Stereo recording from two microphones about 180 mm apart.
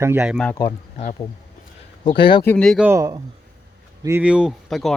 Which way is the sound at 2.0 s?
30° left (ahead or behind).